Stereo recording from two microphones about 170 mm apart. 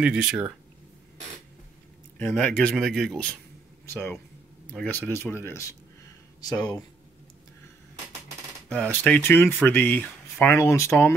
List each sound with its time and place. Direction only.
0.0 s speech: 5° right (ahead or behind)
2.1 s speech: 10° left (ahead or behind)
3.8 s speech: 15° left (ahead or behind)
8.6 s speech: 5° left (ahead or behind)